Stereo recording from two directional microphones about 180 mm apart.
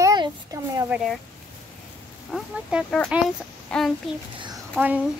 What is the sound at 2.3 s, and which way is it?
Speech, centre (ahead or behind).